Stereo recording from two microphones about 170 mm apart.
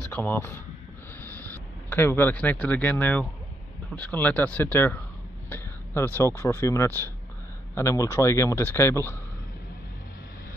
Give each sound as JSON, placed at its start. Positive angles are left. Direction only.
{"t": 0.1, "sound": "a man's voice", "side_deg": 10}
{"t": 1.9, "sound": "a man's voice", "side_deg": 10}